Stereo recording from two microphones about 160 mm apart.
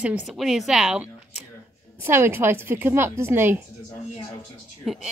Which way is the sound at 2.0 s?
15° right (ahead or behind).